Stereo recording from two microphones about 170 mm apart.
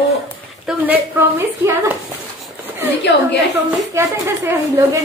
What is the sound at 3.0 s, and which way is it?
Speech, 90° left.